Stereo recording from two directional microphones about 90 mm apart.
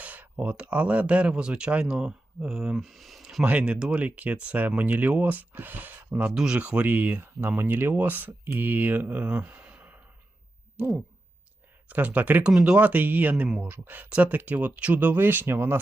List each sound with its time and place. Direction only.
0.0 s speech: 15° right (ahead or behind); by 3.2 s centre (ahead or behind)
3.4 s speech: 15° right (ahead or behind)
6.3 s speech: 10° right (ahead or behind)
11.9 s speech: 20° right (ahead or behind)